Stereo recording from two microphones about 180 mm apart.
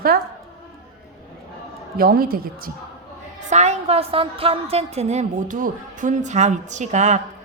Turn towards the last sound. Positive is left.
turn(degrees=-40)  # may be behind; listen again after turning